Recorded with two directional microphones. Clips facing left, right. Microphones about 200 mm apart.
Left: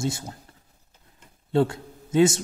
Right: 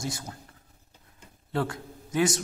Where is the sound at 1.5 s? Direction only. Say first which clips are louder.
Left 8 dB; 25° left (ahead or behind).